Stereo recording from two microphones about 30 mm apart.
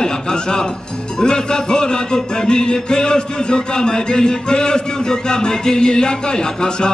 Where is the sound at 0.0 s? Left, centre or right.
Left.